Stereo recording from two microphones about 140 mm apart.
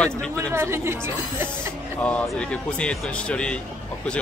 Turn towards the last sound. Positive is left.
turn(degrees=10)  # may be behind; listen again after turning